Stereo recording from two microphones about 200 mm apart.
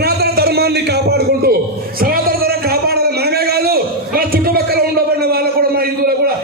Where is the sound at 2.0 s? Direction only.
50° right (ahead or behind).